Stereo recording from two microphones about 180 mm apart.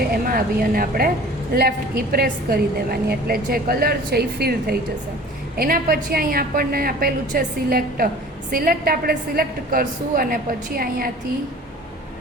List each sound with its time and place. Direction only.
0.1 s a woman's voice: 55° right (ahead or behind)